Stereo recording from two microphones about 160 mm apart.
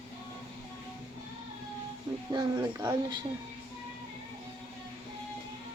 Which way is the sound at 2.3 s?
25° right (ahead or behind).